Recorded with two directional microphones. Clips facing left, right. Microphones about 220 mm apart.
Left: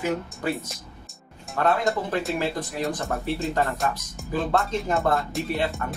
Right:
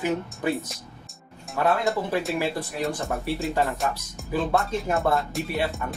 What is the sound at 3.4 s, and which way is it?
Speech, centre (ahead or behind).